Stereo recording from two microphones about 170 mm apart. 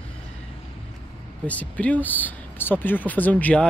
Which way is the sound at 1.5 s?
10° left (ahead or behind).